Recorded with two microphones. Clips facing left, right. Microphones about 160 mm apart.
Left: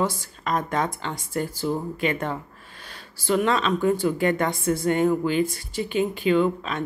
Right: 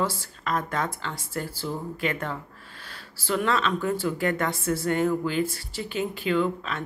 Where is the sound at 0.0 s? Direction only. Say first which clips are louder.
Left 2 dB; 15° left (ahead or behind).